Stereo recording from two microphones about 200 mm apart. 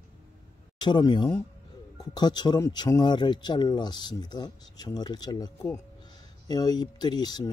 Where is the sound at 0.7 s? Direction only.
20° left (ahead or behind).